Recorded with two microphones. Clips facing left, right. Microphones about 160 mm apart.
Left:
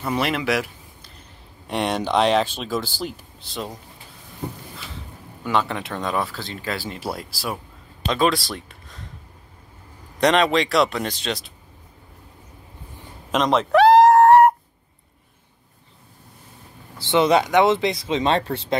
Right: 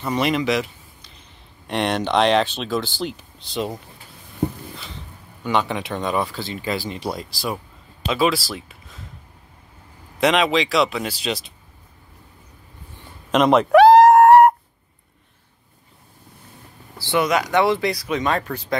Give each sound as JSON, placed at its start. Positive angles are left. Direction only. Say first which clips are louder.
{"t": 0.0, "sound": "speech", "louder": "right 2 dB", "side_deg": 5}
{"t": 5.4, "sound": "speech", "louder": "right 1 dB", "side_deg": 0}
{"t": 10.2, "sound": "speech", "louder": "even", "side_deg": 0}
{"t": 13.3, "sound": "a sound", "louder": "right 4 dB", "side_deg": -5}
{"t": 17.0, "sound": "speech", "louder": "left 3 dB", "side_deg": 25}